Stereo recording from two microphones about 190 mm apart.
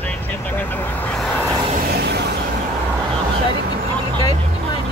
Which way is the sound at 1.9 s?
60° right (ahead or behind).